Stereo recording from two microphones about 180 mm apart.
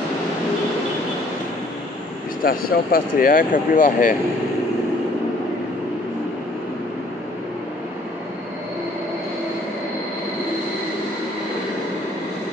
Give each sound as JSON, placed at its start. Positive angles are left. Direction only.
{"t": 2.4, "sound": "speech", "side_deg": 55}